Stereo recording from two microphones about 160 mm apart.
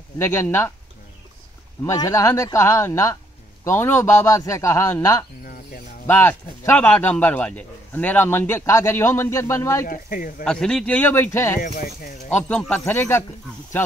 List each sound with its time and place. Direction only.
0.2 s a man's voice: 15° left (ahead or behind)
1.9 s a man's voice: 20° left (ahead or behind)
9.8 s speech: 60° left (ahead or behind)
10.4 s a man's voice: 5° left (ahead or behind)
11.6 s speech: 65° left (ahead or behind)
12.3 s a man's voice: 10° left (ahead or behind)